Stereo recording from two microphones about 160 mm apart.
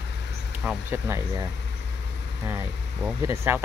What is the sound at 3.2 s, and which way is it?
Speech, 15° right (ahead or behind).